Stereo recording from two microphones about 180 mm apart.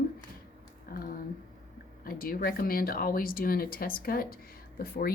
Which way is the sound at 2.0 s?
55° left (ahead or behind).